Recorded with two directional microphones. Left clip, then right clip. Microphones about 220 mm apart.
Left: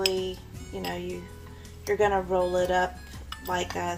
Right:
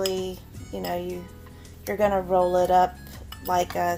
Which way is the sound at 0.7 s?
40° right (ahead or behind).